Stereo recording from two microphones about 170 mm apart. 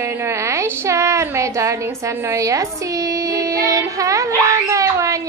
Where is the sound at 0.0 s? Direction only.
15° right (ahead or behind).